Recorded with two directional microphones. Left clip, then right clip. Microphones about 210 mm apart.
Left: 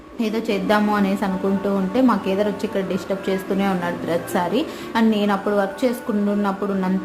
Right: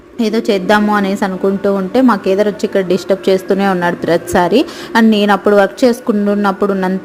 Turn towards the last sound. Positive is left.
turn(degrees=-30)  # may be behind; listen again after turning